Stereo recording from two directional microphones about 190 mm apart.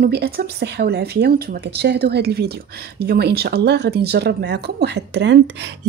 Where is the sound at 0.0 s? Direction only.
55° right (ahead or behind).